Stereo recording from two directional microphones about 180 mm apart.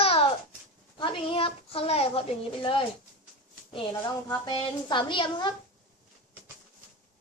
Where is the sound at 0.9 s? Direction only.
30° left (ahead or behind).